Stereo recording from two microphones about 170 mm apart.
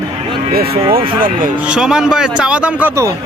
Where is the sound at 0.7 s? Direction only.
30° right (ahead or behind).